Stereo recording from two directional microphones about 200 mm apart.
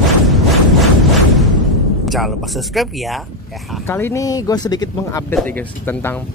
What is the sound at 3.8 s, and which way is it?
Speech, 10° left (ahead or behind).